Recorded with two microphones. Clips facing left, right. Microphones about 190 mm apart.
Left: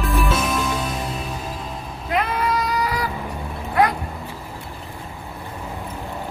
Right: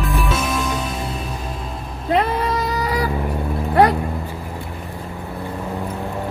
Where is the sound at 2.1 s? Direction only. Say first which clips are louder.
Right 3 dB; 30° right (ahead or behind).